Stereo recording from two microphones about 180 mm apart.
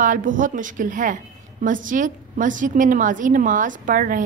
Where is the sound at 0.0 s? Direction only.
45° right (ahead or behind).